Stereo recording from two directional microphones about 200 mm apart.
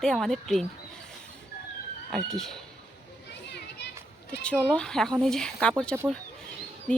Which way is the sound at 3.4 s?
60° left (ahead or behind).